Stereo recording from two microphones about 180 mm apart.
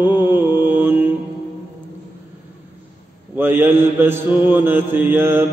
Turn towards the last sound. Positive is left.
turn(degrees=-10)  # may be behind; listen again after turning